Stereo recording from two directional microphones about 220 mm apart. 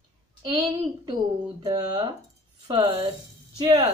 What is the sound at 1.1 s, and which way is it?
Speech, 20° right (ahead or behind).